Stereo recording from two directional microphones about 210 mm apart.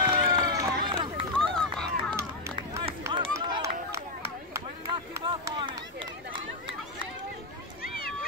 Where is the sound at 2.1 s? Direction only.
15° right (ahead or behind).